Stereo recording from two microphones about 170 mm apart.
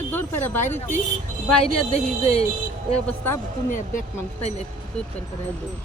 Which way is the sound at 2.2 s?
35° left (ahead or behind).